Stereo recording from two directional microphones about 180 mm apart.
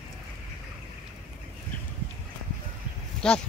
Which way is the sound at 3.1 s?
5° left (ahead or behind).